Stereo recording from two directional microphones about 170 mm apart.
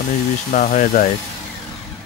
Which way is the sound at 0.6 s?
50° left (ahead or behind).